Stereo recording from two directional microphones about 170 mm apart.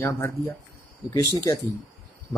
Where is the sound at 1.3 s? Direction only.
20° left (ahead or behind).